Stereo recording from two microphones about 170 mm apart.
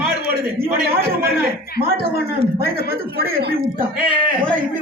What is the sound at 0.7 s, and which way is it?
Speech, 60° right (ahead or behind).